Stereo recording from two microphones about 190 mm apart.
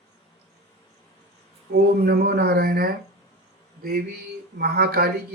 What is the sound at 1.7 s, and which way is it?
Speech, 55° right (ahead or behind).